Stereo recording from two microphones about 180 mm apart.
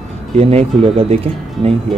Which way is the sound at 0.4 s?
35° right (ahead or behind).